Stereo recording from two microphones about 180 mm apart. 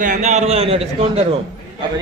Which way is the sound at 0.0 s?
45° right (ahead or behind).